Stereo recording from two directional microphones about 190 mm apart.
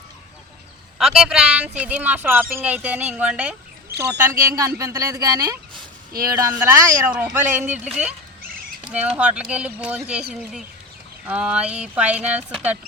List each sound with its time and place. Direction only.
0.9 s speech: 5° right (ahead or behind)
4.4 s speech: 15° right (ahead or behind)